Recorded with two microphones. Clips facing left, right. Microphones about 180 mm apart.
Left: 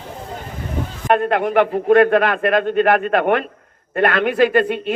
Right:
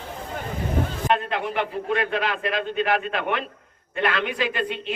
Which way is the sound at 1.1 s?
55° left (ahead or behind).